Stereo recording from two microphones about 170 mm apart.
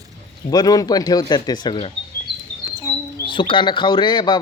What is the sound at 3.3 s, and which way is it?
A man's voice, 30° left (ahead or behind).